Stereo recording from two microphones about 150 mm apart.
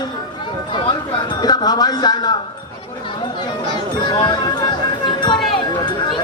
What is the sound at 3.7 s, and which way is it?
Speech, 30° left (ahead or behind).